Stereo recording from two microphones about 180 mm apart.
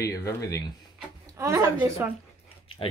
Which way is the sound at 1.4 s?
15° right (ahead or behind).